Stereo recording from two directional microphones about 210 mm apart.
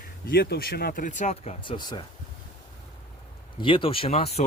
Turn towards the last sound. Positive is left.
turn(degrees=30)  # may be behind; listen again after turning